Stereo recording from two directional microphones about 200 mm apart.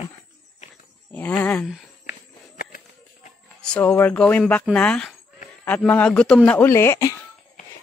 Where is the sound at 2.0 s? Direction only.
45° left (ahead or behind).